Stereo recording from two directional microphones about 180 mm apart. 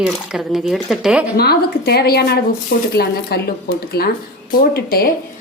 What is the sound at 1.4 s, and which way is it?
A woman's voice, 60° left (ahead or behind).